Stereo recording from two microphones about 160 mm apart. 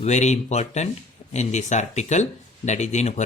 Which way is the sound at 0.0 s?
45° left (ahead or behind).